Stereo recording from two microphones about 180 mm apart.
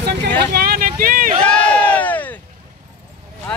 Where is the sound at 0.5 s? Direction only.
55° right (ahead or behind).